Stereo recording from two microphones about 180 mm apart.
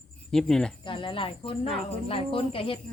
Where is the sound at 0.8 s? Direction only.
25° left (ahead or behind).